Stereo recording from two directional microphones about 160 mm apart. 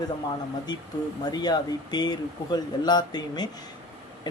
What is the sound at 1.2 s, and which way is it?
Speech, 25° left (ahead or behind).